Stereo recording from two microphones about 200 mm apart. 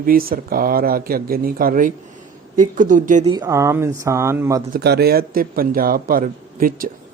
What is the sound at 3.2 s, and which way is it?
Speech, 20° right (ahead or behind).